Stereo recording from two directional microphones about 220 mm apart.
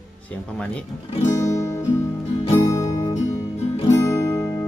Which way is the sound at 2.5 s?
15° left (ahead or behind).